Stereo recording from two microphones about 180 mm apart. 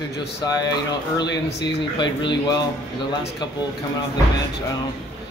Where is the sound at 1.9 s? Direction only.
25° left (ahead or behind).